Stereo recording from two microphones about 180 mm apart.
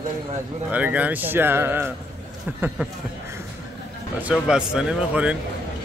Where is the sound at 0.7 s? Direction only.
10° right (ahead or behind).